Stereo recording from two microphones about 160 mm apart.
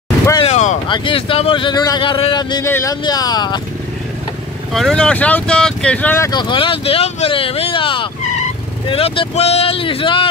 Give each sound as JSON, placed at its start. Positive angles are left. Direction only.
{"t": 0.5, "sound": "boat", "side_deg": 50}
{"t": 0.8, "sound": "speech", "side_deg": 30}
{"t": 2.6, "sound": "speech", "side_deg": 20}
{"t": 4.7, "sound": "speech", "side_deg": 5}
{"t": 6.3, "sound": "speech", "side_deg": 30}